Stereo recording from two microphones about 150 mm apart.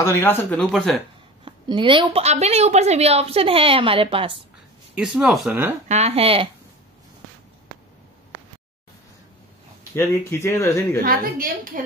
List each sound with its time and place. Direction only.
0.0 s speech: 15° left (ahead or behind)
1.4 s a woman's voice: 35° right (ahead or behind)
4.9 s speech: 5° right (ahead or behind)
5.9 s a woman's voice: 45° right (ahead or behind)
9.9 s speech: 15° left (ahead or behind)
11.0 s a woman's voice: 75° right (ahead or behind)